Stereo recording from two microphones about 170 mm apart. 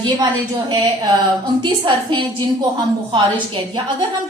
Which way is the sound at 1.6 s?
30° right (ahead or behind).